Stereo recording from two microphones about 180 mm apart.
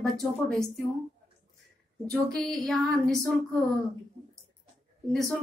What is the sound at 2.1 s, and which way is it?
Speech, 5° left (ahead or behind).